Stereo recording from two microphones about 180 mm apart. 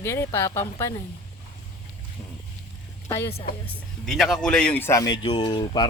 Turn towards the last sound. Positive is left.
turn(degrees=25)  # may be behind; listen again after turning